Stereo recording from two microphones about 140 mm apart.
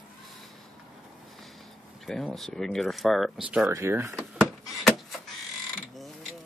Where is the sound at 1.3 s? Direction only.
Centre (ahead or behind).